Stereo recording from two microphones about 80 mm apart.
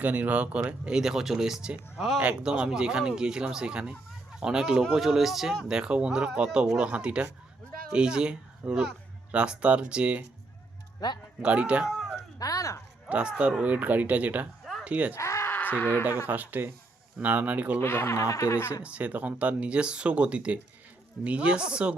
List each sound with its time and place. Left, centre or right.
0.0 s speech: centre
11.0 s speech: left
11.4 s speech: centre
11.9 s a sound: centre
12.4 s speech: left
13.1 s speech: centre
14.6 s a sound: centre
14.8 s speech: centre
15.1 s a sound: left
15.5 s a sound: left
16.2 s speech: right
17.7 s speech: left
18.8 s speech: centre